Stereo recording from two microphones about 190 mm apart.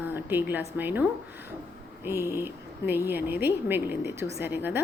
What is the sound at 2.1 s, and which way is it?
A woman's voice, 15° right (ahead or behind).